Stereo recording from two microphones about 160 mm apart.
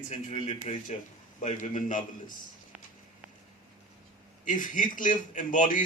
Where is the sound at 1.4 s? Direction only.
55° left (ahead or behind).